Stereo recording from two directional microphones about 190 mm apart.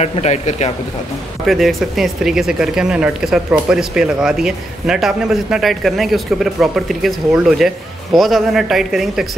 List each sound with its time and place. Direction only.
0.0 s speech: 35° left (ahead or behind)
1.4 s speech: centre (ahead or behind)